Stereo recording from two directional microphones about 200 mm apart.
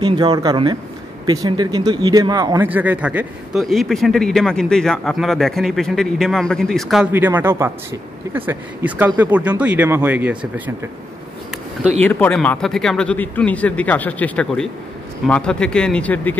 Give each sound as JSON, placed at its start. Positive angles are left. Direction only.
{"t": 0.0, "sound": "speech", "side_deg": -20}
{"t": 12.0, "sound": "speech", "side_deg": 10}